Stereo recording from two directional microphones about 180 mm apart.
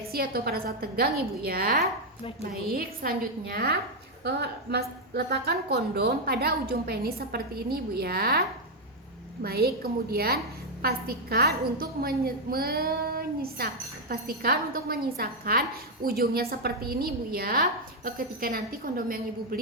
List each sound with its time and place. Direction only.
0.1 s a woman's voice: 55° right (ahead or behind)